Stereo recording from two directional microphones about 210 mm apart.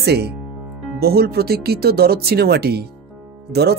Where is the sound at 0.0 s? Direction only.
50° right (ahead or behind).